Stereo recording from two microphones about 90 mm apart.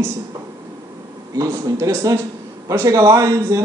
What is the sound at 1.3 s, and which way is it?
Speech, 40° right (ahead or behind).